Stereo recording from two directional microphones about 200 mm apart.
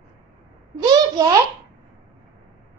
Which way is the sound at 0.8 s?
20° right (ahead or behind).